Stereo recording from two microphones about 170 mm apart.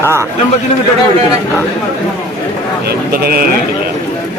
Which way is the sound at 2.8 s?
65° right (ahead or behind).